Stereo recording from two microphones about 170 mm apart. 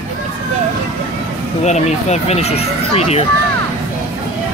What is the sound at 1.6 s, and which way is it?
Speech, 40° left (ahead or behind).